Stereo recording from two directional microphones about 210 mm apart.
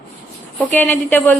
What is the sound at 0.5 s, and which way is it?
Speech, 10° left (ahead or behind).